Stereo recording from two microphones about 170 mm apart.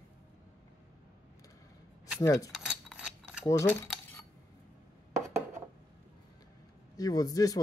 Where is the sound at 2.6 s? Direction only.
5° right (ahead or behind).